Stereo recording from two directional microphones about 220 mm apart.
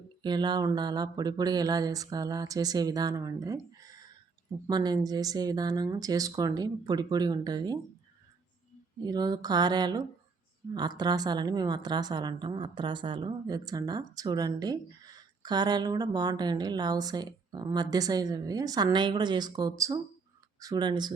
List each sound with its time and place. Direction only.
0.2 s a woman's voice: 20° right (ahead or behind)
9.0 s a woman's voice: 15° right (ahead or behind)